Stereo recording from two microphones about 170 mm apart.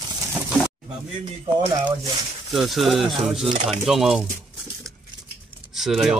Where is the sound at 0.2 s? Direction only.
10° right (ahead or behind).